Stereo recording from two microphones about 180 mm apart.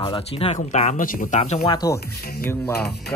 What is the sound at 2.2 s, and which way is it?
Speech, 60° left (ahead or behind).